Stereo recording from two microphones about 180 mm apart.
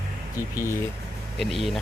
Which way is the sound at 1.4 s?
Centre (ahead or behind).